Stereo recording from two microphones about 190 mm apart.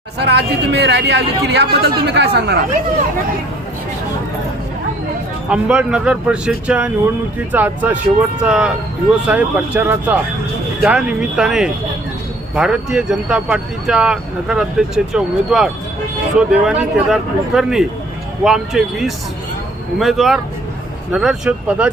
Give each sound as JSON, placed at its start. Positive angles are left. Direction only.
{"t": 0.2, "sound": "speech", "side_deg": -60}
{"t": 5.5, "sound": "speech", "side_deg": -5}